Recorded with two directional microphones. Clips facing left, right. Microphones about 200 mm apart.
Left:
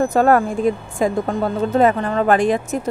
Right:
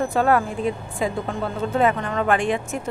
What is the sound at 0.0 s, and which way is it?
A woman's voice, 45° left (ahead or behind).